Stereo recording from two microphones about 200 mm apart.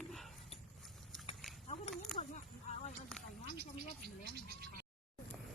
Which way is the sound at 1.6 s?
35° left (ahead or behind).